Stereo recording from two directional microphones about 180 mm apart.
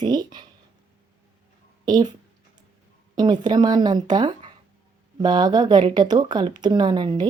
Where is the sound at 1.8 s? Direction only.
25° right (ahead or behind).